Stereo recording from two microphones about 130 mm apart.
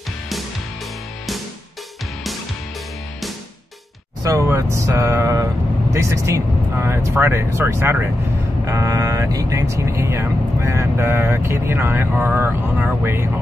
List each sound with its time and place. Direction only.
4.2 s speech: 25° right (ahead or behind)